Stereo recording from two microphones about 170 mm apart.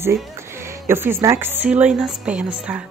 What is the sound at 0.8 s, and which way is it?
A woman's voice, 15° right (ahead or behind).